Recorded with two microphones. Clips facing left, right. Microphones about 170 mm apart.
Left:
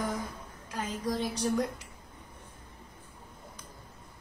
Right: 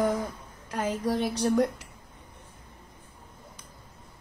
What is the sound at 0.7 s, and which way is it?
Speech, 65° right (ahead or behind).